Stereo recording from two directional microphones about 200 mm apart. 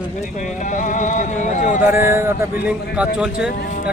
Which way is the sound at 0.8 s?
40° left (ahead or behind).